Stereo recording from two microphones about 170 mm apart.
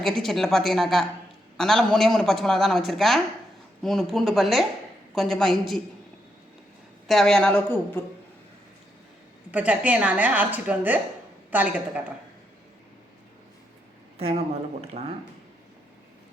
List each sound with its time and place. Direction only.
0.0 s speech: centre (ahead or behind)
7.1 s speech: 5° left (ahead or behind)
9.5 s speech: 10° right (ahead or behind)
14.2 s speech: 35° right (ahead or behind)